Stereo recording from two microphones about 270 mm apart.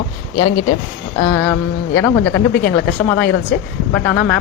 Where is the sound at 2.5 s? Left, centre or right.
Left.